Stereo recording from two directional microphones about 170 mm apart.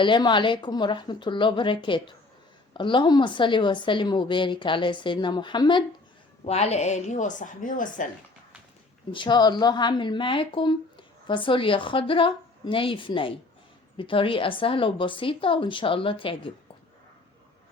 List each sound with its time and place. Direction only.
0.0 s a woman's voice: 25° left (ahead or behind); by 8.0 s 50° left (ahead or behind)
9.1 s a woman's voice: 25° left (ahead or behind)